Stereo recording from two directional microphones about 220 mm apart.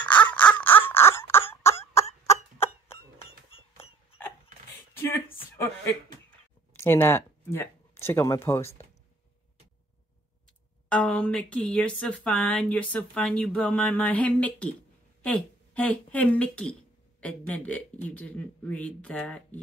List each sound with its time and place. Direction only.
0.1 s wail: 5° left (ahead or behind)
3.5 s clip-clop: 25° left (ahead or behind)
5.3 s a sound: 10° left (ahead or behind)
6.7 s speech: 10° left (ahead or behind)
10.9 s speech: 5° left (ahead or behind)